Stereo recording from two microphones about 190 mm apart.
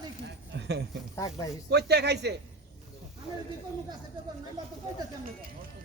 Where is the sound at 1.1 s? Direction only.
15° left (ahead or behind).